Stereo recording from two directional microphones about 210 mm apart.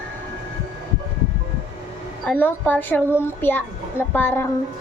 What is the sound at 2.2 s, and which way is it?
A child's voice, 10° left (ahead or behind).